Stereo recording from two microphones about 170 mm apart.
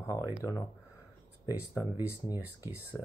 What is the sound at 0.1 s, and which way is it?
Speech, 15° right (ahead or behind).